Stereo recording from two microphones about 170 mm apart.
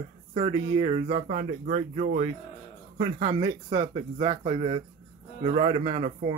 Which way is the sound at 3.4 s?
30° right (ahead or behind).